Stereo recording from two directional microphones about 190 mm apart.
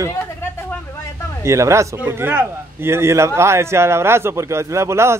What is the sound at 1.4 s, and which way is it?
A man's voice, 15° right (ahead or behind).